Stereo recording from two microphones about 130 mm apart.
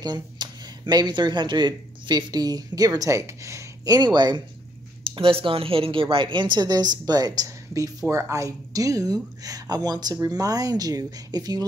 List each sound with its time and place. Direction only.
0.0 s a woman's voice: 35° right (ahead or behind)